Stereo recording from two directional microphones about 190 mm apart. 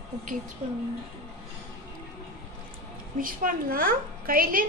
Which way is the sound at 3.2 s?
45° right (ahead or behind).